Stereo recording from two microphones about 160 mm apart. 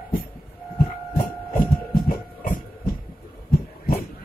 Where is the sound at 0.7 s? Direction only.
65° left (ahead or behind).